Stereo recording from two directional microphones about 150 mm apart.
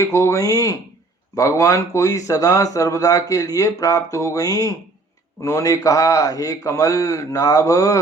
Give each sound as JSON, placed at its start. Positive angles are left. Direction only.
{"t": 0.0, "sound": "speech", "side_deg": 20}